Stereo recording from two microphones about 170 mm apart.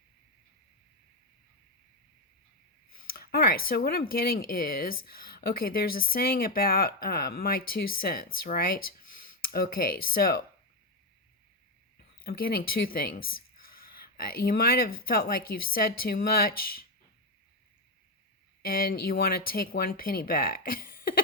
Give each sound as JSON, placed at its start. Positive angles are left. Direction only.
{"t": 3.1, "sound": "speech", "side_deg": 60}
{"t": 12.2, "sound": "speech", "side_deg": 60}
{"t": 18.6, "sound": "speech", "side_deg": 60}